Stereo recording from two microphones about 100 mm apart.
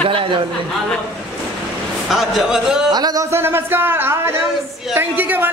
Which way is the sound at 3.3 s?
25° right (ahead or behind).